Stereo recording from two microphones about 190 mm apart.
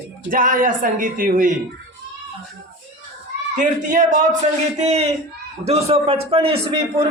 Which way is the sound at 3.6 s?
40° right (ahead or behind).